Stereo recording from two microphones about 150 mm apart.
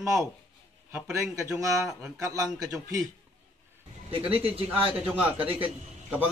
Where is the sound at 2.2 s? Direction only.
25° right (ahead or behind).